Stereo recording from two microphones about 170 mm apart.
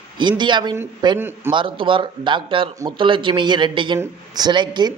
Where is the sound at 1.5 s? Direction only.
30° right (ahead or behind).